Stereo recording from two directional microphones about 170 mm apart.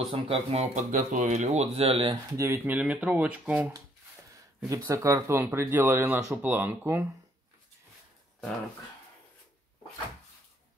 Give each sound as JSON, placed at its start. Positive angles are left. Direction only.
{"t": 0.1, "sound": "speech", "side_deg": -35}
{"t": 2.3, "sound": "speech", "side_deg": -15}
{"t": 4.6, "sound": "speech", "side_deg": -20}